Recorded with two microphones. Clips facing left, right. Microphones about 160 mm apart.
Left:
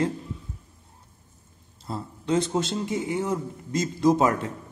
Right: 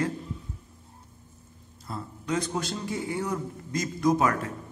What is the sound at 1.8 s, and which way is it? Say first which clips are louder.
Speech: left 4 dB; 25° left (ahead or behind).